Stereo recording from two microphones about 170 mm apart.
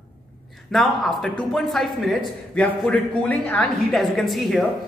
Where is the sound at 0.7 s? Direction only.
Centre (ahead or behind).